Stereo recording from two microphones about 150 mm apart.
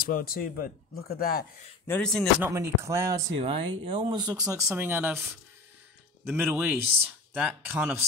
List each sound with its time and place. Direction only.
0.0 s speech: 80° left
1.9 s speech: 10° left (ahead or behind)
2.4 s speech: 20° right (ahead or behind)
3.3 s speech: 35° right (ahead or behind); by 8.0 s 15° right (ahead or behind)